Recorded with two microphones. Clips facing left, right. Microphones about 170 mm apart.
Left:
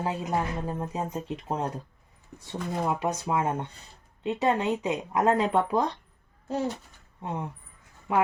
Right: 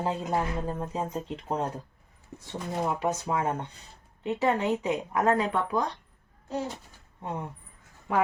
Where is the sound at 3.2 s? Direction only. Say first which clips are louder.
Left 1 dB; 10° left (ahead or behind); by 5.8 s 25° left (ahead or behind).